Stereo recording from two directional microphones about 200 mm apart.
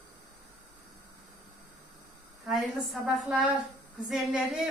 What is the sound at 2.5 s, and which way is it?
A woman's voice, centre (ahead or behind).